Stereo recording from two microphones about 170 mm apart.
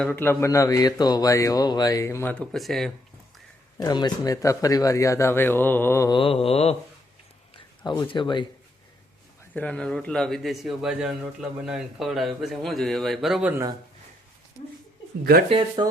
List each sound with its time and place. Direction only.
0.0 s speech: 10° left (ahead or behind)
3.8 s speech: 25° left (ahead or behind)
6.1 s mantra: 30° left (ahead or behind)
7.5 s speech: 30° left (ahead or behind)
9.6 s speech: 5° left (ahead or behind)
15.2 s speech: 65° right (ahead or behind)
15.4 s speech: 30° right (ahead or behind)